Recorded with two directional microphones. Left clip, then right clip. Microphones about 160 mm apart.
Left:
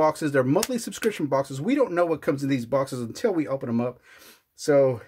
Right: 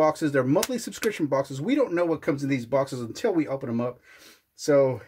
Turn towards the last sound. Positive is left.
turn(degrees=35)  # may be behind; listen again after turning